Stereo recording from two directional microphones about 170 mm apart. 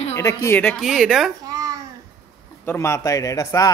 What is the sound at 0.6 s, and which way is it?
Speech, centre (ahead or behind).